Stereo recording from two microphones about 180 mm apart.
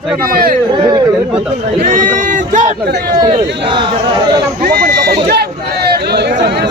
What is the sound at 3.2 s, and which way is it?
Speech, 25° right (ahead or behind).